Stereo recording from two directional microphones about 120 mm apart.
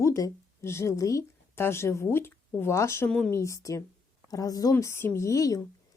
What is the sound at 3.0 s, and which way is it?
Speech, 5° left (ahead or behind).